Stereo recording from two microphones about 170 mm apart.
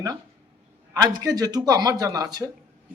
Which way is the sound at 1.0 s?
25° right (ahead or behind).